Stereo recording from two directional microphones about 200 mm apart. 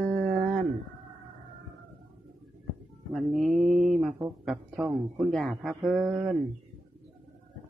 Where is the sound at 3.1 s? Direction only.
Centre (ahead or behind).